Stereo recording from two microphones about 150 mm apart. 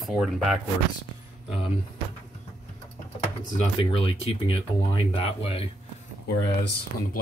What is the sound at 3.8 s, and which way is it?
Speech, 40° left (ahead or behind).